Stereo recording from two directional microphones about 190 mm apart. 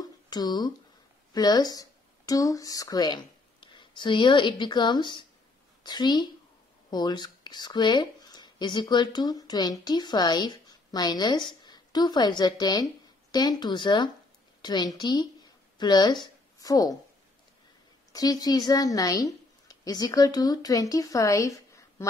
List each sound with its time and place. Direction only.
0.3 s a woman's voice: 20° left (ahead or behind)
18.1 s a woman's voice: 20° left (ahead or behind)